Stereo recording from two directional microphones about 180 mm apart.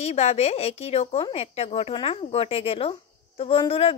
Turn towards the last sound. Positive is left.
turn(degrees=30)  # may be behind; listen again after turning